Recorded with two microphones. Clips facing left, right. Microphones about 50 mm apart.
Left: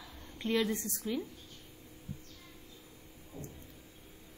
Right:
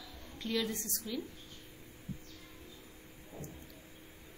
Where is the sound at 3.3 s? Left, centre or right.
Right.